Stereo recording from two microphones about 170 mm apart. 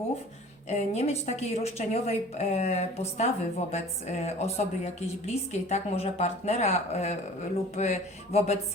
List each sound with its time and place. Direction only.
0.7 s speech: 40° left (ahead or behind)